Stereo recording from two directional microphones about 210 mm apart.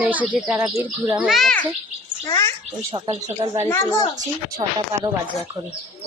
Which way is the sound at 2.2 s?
15° left (ahead or behind).